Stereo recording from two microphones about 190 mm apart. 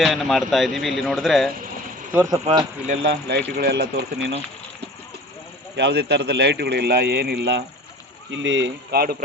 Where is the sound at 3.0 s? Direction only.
60° right (ahead or behind).